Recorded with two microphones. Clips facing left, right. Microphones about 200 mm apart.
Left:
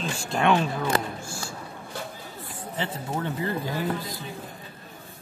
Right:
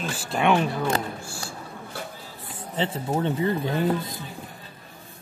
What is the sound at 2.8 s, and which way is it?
Speech, 25° right (ahead or behind).